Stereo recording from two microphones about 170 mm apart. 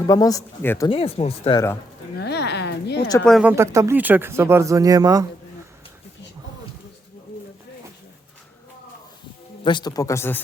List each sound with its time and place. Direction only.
0.1 s speech: 20° left (ahead or behind)
0.9 s speech: 35° left (ahead or behind)
1.5 s speech: 15° left (ahead or behind)
2.1 s a sound: 75° left (ahead or behind)
3.2 s speech: 5° left (ahead or behind)
3.4 s speech: 15° right (ahead or behind)
9.6 s speech: 25° left (ahead or behind)